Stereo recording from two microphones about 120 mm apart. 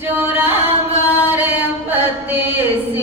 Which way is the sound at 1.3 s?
15° right (ahead or behind).